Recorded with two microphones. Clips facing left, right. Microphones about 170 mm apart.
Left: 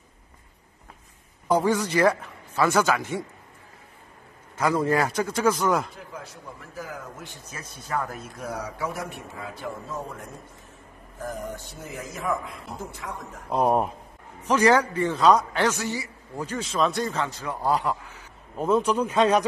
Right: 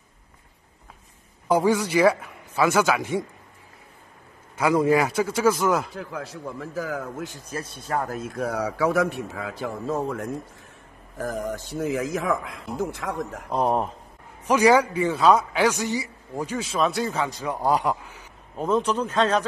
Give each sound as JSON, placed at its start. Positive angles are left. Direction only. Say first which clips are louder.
{"t": 1.5, "sound": "a man's voice", "louder": "right 2 dB", "side_deg": -10}
{"t": 4.6, "sound": "a man's voice", "louder": "right 3 dB", "side_deg": -10}
{"t": 5.9, "sound": "a man's voice", "louder": "right 7 dB", "side_deg": -90}
{"t": 7.4, "sound": "a man's voice", "louder": "right 8 dB", "side_deg": -30}
{"t": 8.1, "sound": "a man's voice", "louder": "right 6 dB", "side_deg": -75}
{"t": 13.5, "sound": "speech", "louder": "left 2 dB", "side_deg": 10}
{"t": 14.4, "sound": "a man's voice", "louder": "right 2 dB", "side_deg": -10}
{"t": 18.6, "sound": "speech", "louder": "left 1 dB", "side_deg": 10}